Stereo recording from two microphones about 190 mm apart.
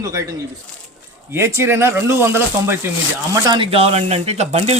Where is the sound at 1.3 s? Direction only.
15° right (ahead or behind).